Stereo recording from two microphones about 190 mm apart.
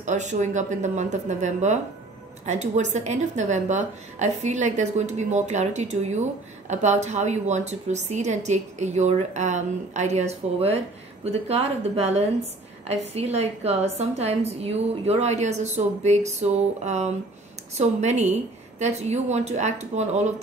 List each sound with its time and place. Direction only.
0.0 s a woman's voice: 40° right (ahead or behind)